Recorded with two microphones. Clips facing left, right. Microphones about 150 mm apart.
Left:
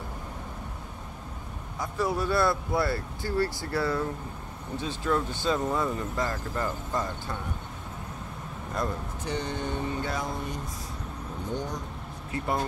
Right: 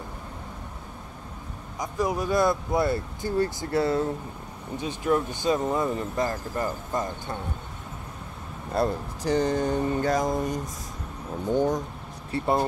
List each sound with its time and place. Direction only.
1.8 s speech: 15° right (ahead or behind)
8.7 s speech: 35° right (ahead or behind)
12.3 s speech: 35° right (ahead or behind)